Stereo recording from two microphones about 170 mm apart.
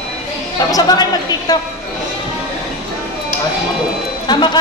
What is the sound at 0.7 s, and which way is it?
Speech, 25° left (ahead or behind).